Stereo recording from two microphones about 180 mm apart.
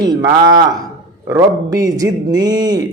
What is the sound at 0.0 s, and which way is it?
Speech, 20° right (ahead or behind).